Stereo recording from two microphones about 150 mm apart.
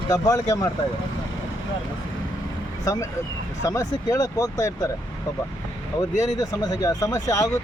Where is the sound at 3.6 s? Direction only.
20° left (ahead or behind).